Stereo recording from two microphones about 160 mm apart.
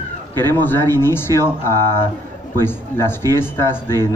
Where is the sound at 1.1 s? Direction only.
15° left (ahead or behind).